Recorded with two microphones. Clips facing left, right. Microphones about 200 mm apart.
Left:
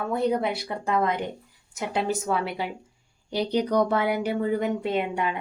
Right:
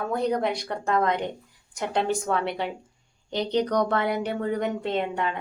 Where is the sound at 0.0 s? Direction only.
5° left (ahead or behind).